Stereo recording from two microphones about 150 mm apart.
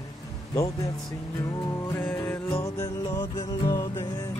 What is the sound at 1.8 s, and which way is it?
Music, 15° left (ahead or behind).